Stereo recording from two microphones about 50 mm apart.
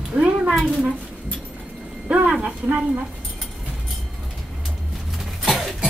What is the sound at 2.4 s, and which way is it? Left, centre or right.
Speech, right.